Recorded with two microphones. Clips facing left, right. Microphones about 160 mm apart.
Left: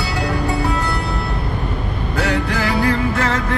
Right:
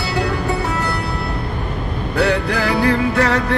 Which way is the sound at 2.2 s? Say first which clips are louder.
Right 3 dB; 70° right (ahead or behind).